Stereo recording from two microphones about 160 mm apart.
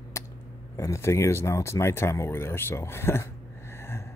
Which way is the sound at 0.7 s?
20° left (ahead or behind).